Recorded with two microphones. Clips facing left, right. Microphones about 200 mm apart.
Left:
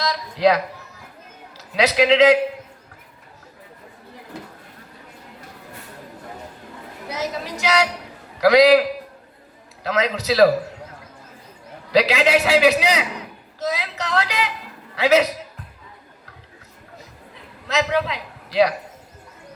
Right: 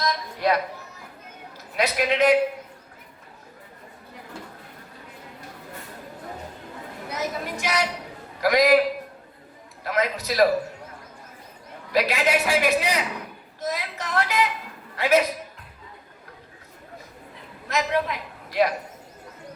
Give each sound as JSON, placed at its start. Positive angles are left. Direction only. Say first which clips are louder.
{"t": 0.3, "sound": "a man's voice", "louder": "left 7 dB", "side_deg": 90}
{"t": 7.4, "sound": "a man's voice", "louder": "left 8 dB", "side_deg": 85}
{"t": 9.8, "sound": "a man's voice", "louder": "left 4 dB", "side_deg": 90}
{"t": 11.9, "sound": "a man's voice", "louder": "left 5 dB", "side_deg": 85}
{"t": 17.7, "sound": "a man's voice", "louder": "left 3 dB", "side_deg": 80}